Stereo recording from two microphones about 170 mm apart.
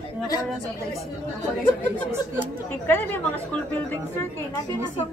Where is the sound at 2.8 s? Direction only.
10° left (ahead or behind).